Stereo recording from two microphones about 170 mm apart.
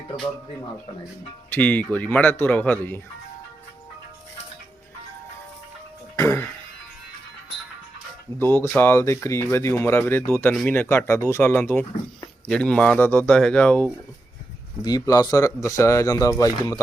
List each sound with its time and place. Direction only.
1.5 s speech: 10° left (ahead or behind)
6.1 s speech: 15° left (ahead or behind)
8.4 s speech: 10° left (ahead or behind)
14.8 s speech: 20° left (ahead or behind)